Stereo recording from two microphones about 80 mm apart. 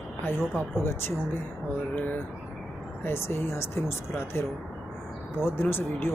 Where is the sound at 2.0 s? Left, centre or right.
Left.